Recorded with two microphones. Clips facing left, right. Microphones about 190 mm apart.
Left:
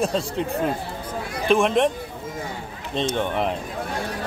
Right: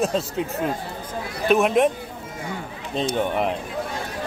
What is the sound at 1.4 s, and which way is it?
Speech, 5° right (ahead or behind).